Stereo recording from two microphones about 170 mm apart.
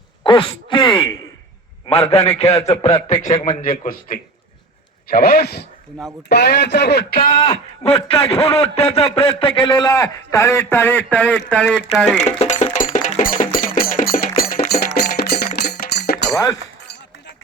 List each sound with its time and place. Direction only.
0.3 s a man's voice: 30° left (ahead or behind)
3.4 s a man's voice: 50° left (ahead or behind)
5.0 s speech: 65° left (ahead or behind); by 7.1 s 80° left
7.4 s a man's voice: 35° left (ahead or behind); by 12.2 s 5° left (ahead or behind)
12.2 s music: 45° left (ahead or behind); by 16.2 s 65° left (ahead or behind)